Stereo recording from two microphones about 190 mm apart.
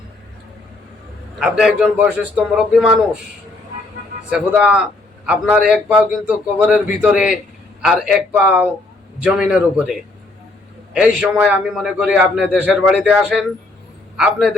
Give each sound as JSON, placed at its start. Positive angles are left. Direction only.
{"t": 1.4, "sound": "a man's voice", "side_deg": -5}
{"t": 4.3, "sound": "a man's voice", "side_deg": -5}